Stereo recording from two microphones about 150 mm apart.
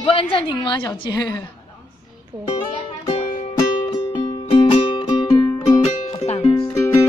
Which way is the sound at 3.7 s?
35° left (ahead or behind).